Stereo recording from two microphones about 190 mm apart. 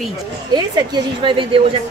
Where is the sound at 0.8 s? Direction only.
25° right (ahead or behind).